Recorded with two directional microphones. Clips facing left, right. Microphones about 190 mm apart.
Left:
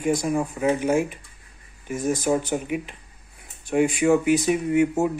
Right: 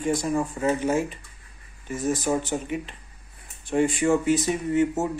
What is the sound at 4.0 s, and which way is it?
Speech, 15° left (ahead or behind).